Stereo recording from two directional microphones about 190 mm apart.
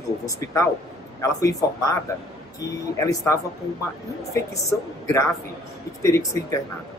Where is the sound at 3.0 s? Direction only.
15° left (ahead or behind).